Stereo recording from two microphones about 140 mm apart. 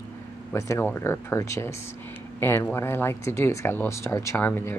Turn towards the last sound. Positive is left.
turn(degrees=15)  # may be behind; listen again after turning